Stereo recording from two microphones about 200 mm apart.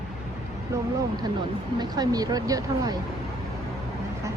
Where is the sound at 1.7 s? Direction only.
20° right (ahead or behind).